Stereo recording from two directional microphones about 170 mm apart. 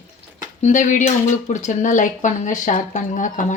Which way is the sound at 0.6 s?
45° left (ahead or behind).